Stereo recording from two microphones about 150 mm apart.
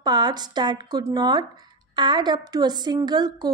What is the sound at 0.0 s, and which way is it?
A woman's voice, 30° right (ahead or behind).